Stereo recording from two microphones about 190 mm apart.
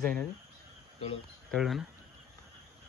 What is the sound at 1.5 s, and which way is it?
Speech, centre (ahead or behind).